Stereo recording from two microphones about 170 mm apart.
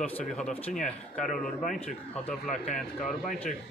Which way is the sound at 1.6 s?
50° left (ahead or behind).